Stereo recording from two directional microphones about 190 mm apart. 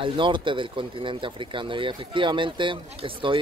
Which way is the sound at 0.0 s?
25° right (ahead or behind).